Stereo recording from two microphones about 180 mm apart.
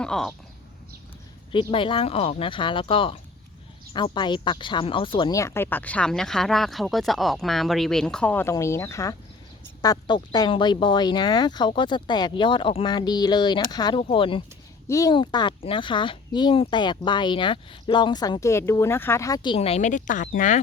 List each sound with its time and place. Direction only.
0.0 s speech: 5° left (ahead or behind)
1.7 s speech: 30° left (ahead or behind)
14.8 s speech: 20° left (ahead or behind); by 20.6 s 45° left (ahead or behind)